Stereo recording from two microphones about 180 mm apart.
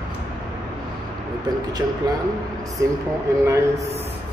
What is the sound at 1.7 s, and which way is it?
A man's voice, 20° right (ahead or behind).